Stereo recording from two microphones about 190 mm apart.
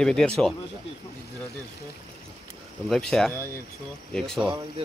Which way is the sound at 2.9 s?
5° left (ahead or behind).